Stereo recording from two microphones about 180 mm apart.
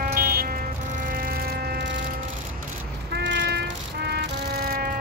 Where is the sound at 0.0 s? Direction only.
55° right (ahead or behind).